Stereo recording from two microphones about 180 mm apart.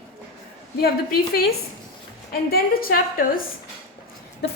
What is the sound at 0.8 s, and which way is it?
A woman's voice, 55° left (ahead or behind).